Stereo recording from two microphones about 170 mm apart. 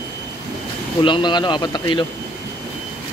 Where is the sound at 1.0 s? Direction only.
30° left (ahead or behind).